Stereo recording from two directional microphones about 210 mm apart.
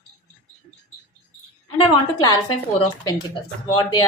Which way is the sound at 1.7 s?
20° left (ahead or behind).